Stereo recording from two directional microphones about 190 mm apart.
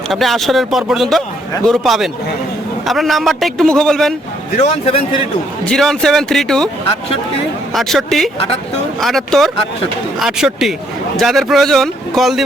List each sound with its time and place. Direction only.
0.1 s a man's voice: centre (ahead or behind)
4.5 s speech: 35° left (ahead or behind)
5.6 s a man's voice: centre (ahead or behind)
7.7 s a man's voice: centre (ahead or behind)